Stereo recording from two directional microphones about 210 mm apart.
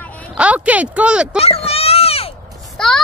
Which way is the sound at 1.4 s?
30° left (ahead or behind).